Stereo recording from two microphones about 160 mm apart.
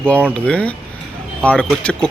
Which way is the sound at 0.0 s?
10° left (ahead or behind).